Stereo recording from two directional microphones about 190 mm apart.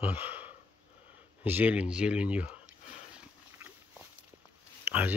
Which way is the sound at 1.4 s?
10° right (ahead or behind).